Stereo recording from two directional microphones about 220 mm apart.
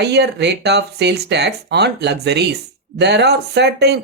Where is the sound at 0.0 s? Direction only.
50° right (ahead or behind).